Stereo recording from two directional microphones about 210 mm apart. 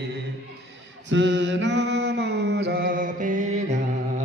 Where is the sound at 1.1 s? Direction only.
60° right (ahead or behind); by 4.2 s 35° right (ahead or behind).